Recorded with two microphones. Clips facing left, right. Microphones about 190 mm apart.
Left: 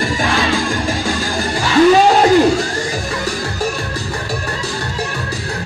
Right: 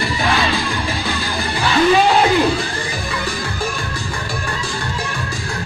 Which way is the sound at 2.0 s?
40° left (ahead or behind).